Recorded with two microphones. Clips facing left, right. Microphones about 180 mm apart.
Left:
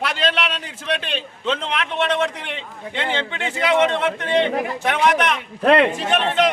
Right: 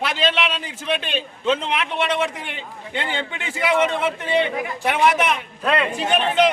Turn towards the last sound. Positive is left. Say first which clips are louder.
# right 1 dB
turn(degrees=-5)  # may be behind; listen again after turning